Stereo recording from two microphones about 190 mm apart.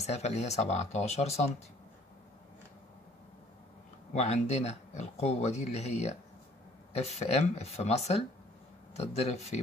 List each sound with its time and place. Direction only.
0.0 s speech: 35° left (ahead or behind)
4.1 s speech: 35° left (ahead or behind)